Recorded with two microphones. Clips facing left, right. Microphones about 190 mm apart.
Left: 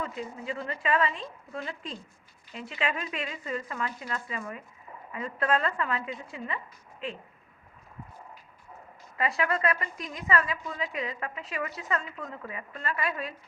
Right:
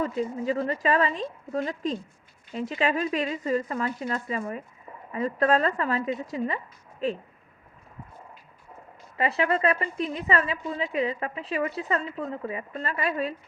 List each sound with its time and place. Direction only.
0.0 s a woman's voice: 40° right (ahead or behind)
9.1 s a woman's voice: 30° right (ahead or behind)